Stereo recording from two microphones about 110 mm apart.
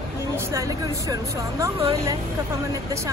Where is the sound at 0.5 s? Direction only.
30° right (ahead or behind).